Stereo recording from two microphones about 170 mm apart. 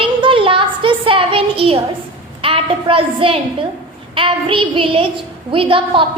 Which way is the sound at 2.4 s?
30° right (ahead or behind).